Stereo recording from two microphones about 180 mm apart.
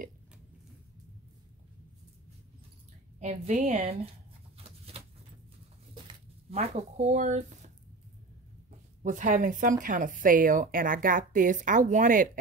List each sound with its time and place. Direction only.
3.2 s speech: 40° right (ahead or behind)
4.6 s a sound: 35° right (ahead or behind)
6.5 s speech: 35° right (ahead or behind)
9.0 s a woman's voice: 45° right (ahead or behind)